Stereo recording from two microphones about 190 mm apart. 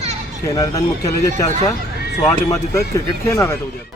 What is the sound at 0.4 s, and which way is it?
Speech, 15° left (ahead or behind).